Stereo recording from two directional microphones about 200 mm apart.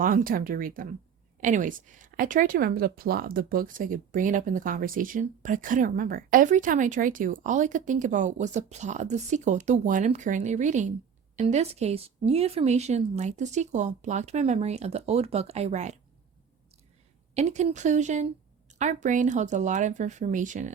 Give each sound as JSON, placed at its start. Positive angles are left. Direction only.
{"t": 0.0, "sound": "speech", "side_deg": -45}
{"t": 17.3, "sound": "speech", "side_deg": -35}